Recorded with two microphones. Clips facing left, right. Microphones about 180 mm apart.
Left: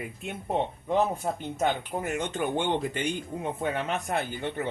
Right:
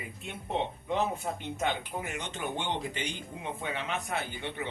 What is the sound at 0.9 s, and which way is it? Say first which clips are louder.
Speech: left 5 dB; 40° left (ahead or behind).